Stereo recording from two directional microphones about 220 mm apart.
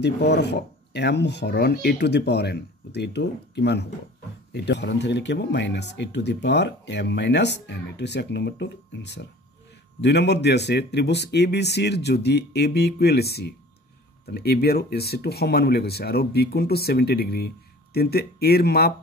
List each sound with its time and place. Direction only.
0.0 s speech: 50° left (ahead or behind)